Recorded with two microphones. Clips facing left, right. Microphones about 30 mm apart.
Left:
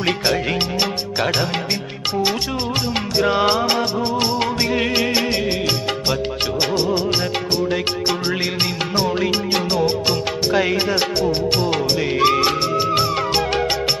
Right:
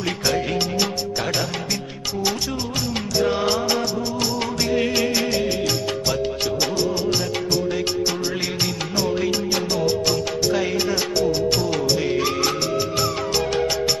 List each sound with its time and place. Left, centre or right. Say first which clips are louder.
0.0 s speech: left 3 dB; left
2.8 s speech: even; left
3.2 s music: left 5 dB; left
4.0 s music: left 4 dB; left
11.7 s music: left 1 dB; left
12.2 s music: left 6 dB; left